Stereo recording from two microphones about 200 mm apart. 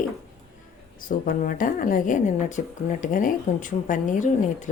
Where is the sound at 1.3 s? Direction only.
45° left (ahead or behind).